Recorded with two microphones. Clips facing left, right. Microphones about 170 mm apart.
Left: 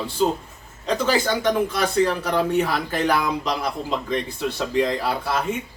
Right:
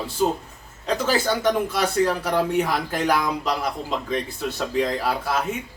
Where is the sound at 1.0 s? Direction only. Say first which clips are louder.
Even; 5° right (ahead or behind).